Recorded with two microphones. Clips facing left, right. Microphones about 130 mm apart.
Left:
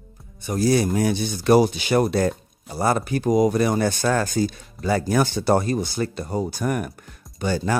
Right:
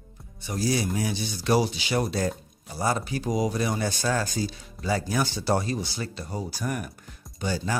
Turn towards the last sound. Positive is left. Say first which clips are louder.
# left 6 dB
turn(degrees=60)  # may be behind; listen again after turning